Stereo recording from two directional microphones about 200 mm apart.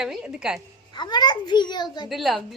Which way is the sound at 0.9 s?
20° left (ahead or behind).